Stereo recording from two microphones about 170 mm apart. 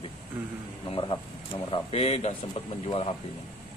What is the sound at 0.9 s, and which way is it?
Speech, 30° left (ahead or behind).